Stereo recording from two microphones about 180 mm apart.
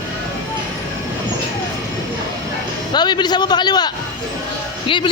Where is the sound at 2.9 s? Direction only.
25° left (ahead or behind).